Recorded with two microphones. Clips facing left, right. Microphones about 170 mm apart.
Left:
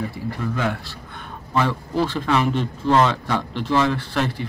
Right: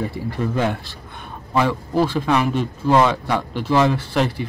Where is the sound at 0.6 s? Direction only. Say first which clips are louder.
Right 3 dB; 25° right (ahead or behind).